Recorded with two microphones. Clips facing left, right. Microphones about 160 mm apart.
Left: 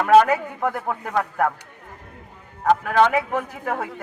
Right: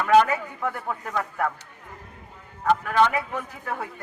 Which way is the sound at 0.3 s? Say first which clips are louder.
Left 5 dB; 50° left (ahead or behind).